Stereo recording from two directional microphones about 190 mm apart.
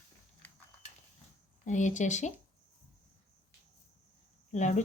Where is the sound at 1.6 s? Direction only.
40° left (ahead or behind).